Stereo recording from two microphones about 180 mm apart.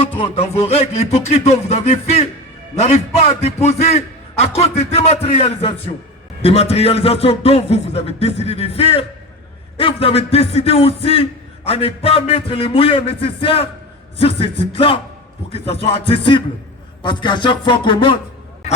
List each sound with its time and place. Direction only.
0.2 s a man's voice: 35° left (ahead or behind)